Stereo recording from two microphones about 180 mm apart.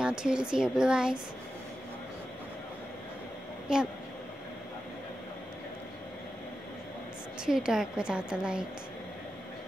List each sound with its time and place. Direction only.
0.0 s speech: 5° right (ahead or behind)
7.4 s speech: 5° right (ahead or behind)